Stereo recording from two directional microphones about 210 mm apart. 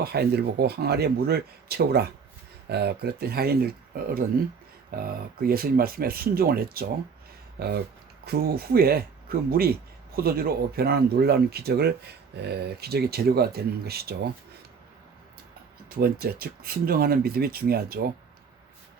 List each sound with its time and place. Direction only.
0.0 s speech: 50° right (ahead or behind)
16.0 s speech: 45° right (ahead or behind)